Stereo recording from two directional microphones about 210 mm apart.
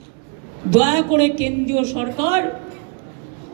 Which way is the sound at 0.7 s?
40° right (ahead or behind).